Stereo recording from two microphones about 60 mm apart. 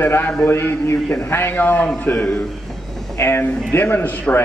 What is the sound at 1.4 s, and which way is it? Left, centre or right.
Speech, left.